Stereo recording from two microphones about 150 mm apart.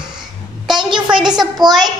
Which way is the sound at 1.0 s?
5° right (ahead or behind).